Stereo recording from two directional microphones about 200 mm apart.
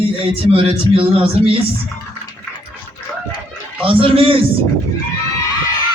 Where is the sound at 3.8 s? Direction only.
25° right (ahead or behind).